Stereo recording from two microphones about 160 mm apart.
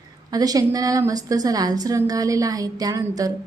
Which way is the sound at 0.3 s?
25° right (ahead or behind).